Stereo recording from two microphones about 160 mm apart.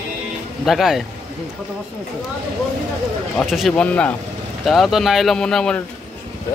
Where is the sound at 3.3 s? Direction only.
Centre (ahead or behind).